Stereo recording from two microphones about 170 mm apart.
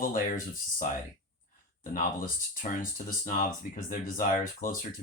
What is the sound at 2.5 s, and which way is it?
Speech, 55° left (ahead or behind).